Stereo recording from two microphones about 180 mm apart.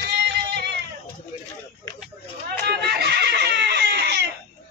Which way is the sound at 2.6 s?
65° right (ahead or behind).